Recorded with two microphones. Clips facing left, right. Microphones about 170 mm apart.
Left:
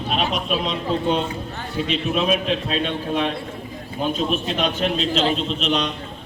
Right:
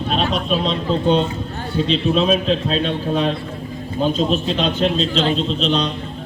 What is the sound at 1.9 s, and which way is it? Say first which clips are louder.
A man's voice: right 4 dB; 30° right (ahead or behind).